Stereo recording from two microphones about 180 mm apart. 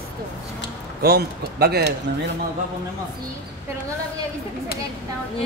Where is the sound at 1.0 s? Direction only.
60° right (ahead or behind).